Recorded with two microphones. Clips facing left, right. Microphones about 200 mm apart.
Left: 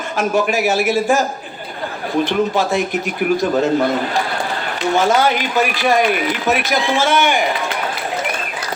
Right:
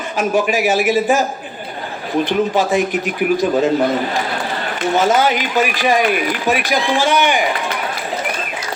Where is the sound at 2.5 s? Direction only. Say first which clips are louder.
Right 2 dB; 15° right (ahead or behind).